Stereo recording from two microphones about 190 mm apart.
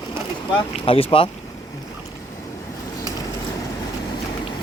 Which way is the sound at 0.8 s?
30° left (ahead or behind).